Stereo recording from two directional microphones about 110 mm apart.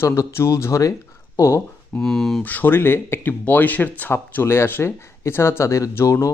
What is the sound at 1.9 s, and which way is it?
Speech, 5° left (ahead or behind).